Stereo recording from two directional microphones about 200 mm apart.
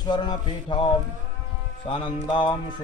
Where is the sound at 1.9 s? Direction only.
25° left (ahead or behind).